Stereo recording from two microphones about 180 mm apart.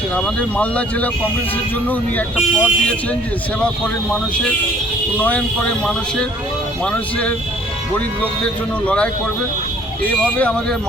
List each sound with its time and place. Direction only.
0.3 s speech: 5° left (ahead or behind)
5.1 s speech: 10° left (ahead or behind)
6.8 s speech: 5° left (ahead or behind)
10.1 s speech: 5° left (ahead or behind)